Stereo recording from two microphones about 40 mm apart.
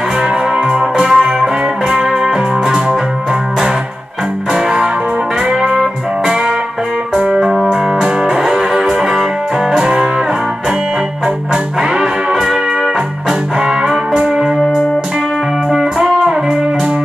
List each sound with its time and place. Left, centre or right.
0.7 s music: centre
5.5 s music: centre
12.0 s music: centre
15.7 s music: centre